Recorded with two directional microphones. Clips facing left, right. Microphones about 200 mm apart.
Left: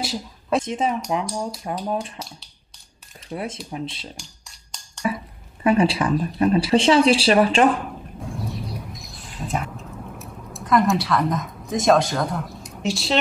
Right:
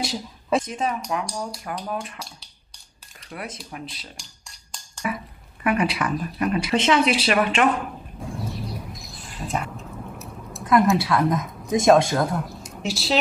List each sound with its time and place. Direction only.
0.0 s speech: centre (ahead or behind)
0.7 s speech: 25° left (ahead or behind)
2.1 s speech: centre (ahead or behind)
3.3 s speech: 25° left (ahead or behind)
4.2 s a sound: centre (ahead or behind)
5.0 s speech: 30° left (ahead or behind)
8.2 s a sound: centre (ahead or behind)